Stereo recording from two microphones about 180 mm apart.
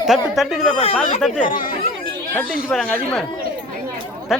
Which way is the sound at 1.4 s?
50° left (ahead or behind).